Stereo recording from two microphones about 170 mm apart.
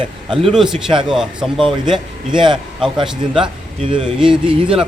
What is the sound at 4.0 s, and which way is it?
Speech, 5° right (ahead or behind).